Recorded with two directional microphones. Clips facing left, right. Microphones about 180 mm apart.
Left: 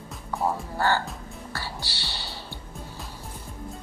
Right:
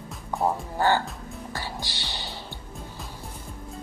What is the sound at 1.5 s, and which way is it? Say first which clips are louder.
Music: right 1 dB; 15° right (ahead or behind).